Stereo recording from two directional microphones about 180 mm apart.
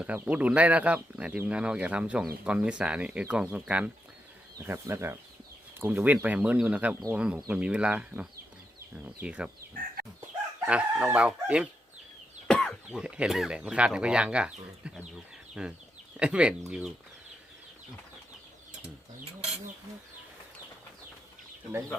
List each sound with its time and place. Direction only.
0.0 s speech: 10° right (ahead or behind)
10.7 s speech: 5° right (ahead or behind)
19.2 s a sound: 35° right (ahead or behind)